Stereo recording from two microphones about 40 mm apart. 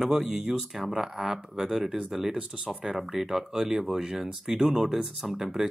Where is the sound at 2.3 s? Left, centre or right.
Right.